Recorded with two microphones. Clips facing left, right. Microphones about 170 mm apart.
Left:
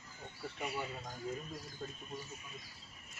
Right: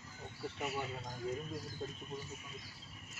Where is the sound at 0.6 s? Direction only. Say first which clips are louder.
Even; centre (ahead or behind).